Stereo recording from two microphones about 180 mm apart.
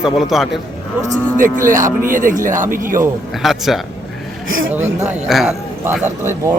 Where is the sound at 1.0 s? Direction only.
50° right (ahead or behind).